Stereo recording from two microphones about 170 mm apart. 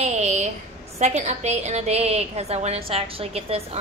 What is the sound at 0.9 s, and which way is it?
A woman's voice, 40° right (ahead or behind).